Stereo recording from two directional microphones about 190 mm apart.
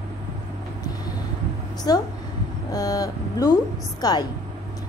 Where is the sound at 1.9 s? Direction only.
20° left (ahead or behind).